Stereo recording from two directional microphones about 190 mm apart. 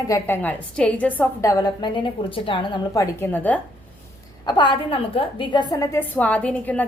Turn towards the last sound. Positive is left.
turn(degrees=5)  # may be behind; listen again after turning